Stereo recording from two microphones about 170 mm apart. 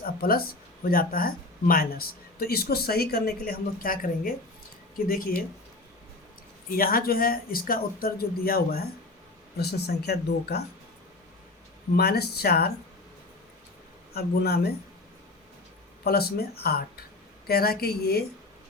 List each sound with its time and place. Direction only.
0.0 s speech: 60° left (ahead or behind)
6.7 s speech: 60° left (ahead or behind)
11.9 s speech: 70° left (ahead or behind)
14.1 s speech: 65° left (ahead or behind)
16.0 s speech: 65° left (ahead or behind)